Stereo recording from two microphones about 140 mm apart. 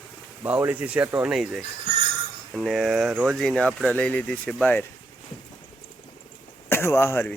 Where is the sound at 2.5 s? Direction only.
Centre (ahead or behind).